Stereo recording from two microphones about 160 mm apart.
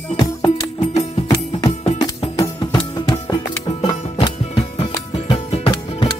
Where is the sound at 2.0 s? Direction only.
25° left (ahead or behind).